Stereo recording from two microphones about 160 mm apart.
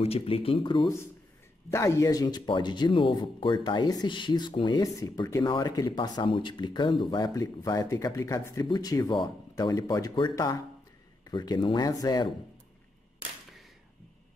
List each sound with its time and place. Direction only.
0.0 s speech: 35° left (ahead or behind)
1.7 s speech: 20° left (ahead or behind)